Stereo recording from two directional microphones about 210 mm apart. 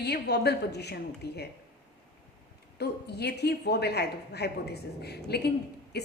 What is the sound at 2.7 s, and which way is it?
A woman's voice, 50° left (ahead or behind).